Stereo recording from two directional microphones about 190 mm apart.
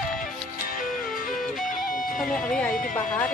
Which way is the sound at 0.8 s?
45° left (ahead or behind).